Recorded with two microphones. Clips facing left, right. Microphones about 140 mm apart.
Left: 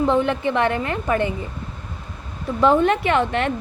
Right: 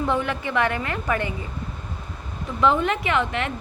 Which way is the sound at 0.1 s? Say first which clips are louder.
Left 5 dB; 20° left (ahead or behind).